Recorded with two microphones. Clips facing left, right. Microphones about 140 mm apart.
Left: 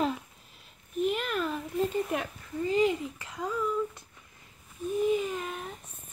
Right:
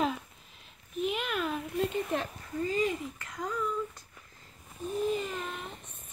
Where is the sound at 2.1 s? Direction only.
10° left (ahead or behind).